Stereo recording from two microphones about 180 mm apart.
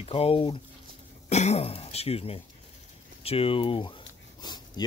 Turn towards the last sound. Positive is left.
turn(degrees=25)  # may be behind; listen again after turning